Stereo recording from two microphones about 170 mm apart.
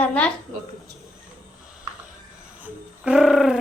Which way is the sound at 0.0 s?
10° left (ahead or behind).